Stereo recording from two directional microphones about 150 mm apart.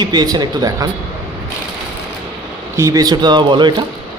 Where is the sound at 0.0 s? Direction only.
25° right (ahead or behind).